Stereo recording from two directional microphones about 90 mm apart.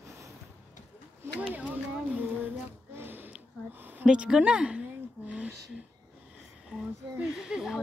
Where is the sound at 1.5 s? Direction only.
20° right (ahead or behind).